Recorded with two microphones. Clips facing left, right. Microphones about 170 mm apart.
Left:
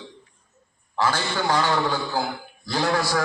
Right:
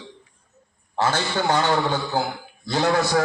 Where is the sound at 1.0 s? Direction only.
25° right (ahead or behind).